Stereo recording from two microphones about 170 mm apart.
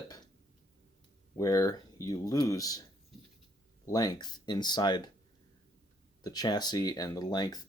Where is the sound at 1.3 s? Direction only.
20° left (ahead or behind).